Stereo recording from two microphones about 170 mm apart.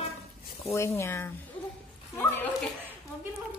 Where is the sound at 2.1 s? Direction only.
10° left (ahead or behind).